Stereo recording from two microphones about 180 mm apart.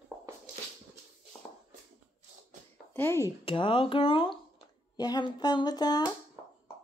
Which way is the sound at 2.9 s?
15° left (ahead or behind).